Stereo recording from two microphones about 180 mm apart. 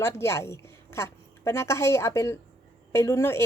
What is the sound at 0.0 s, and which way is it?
A woman's voice, 15° left (ahead or behind).